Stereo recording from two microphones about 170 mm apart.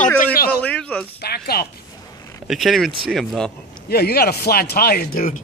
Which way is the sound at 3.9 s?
65° left (ahead or behind).